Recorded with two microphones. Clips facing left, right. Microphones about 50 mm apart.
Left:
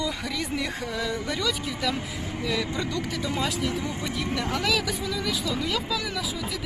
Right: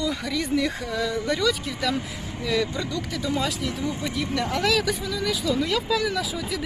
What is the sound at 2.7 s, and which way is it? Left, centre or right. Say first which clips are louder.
Speech: even; left.